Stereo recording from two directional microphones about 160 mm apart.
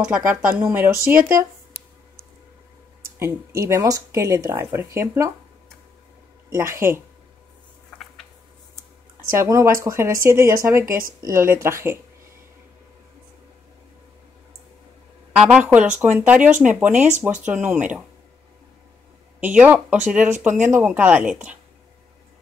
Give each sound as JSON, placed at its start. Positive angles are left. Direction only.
{"t": 0.0, "sound": "speech", "side_deg": -5}
{"t": 3.6, "sound": "speech", "side_deg": -20}
{"t": 6.5, "sound": "speech", "side_deg": -15}
{"t": 9.4, "sound": "speech", "side_deg": -20}
{"t": 15.3, "sound": "speech", "side_deg": -5}
{"t": 19.4, "sound": "speech", "side_deg": -10}